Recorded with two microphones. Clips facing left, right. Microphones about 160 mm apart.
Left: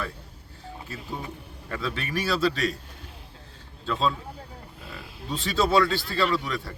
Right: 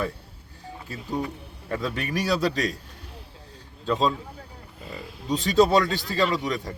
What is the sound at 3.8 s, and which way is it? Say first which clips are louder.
Speech: right 3 dB; 20° right (ahead or behind).